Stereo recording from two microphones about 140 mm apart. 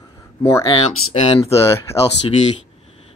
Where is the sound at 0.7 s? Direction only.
40° left (ahead or behind).